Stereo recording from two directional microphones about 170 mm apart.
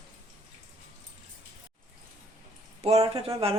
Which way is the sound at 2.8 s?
35° right (ahead or behind).